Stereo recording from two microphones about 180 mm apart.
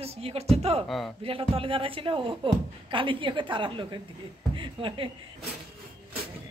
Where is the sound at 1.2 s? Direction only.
30° right (ahead or behind).